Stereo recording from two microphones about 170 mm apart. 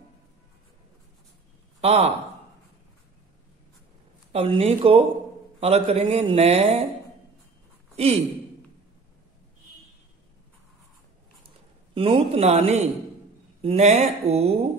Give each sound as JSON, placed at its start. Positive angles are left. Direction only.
{"t": 1.8, "sound": "a man's voice", "side_deg": -35}
{"t": 4.3, "sound": "a man's voice", "side_deg": -35}
{"t": 7.9, "sound": "a man's voice", "side_deg": -35}
{"t": 11.9, "sound": "a man's voice", "side_deg": -35}